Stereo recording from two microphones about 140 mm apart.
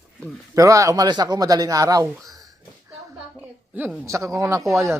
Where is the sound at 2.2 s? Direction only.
25° right (ahead or behind).